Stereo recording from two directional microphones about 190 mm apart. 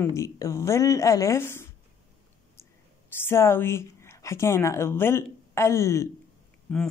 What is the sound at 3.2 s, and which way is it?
Speech, 15° left (ahead or behind).